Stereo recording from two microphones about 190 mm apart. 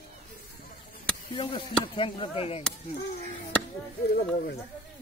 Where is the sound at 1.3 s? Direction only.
25° left (ahead or behind).